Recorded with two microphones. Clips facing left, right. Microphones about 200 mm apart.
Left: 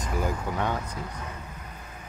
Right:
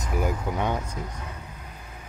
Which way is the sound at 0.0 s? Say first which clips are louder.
Right 2 dB; 10° right (ahead or behind).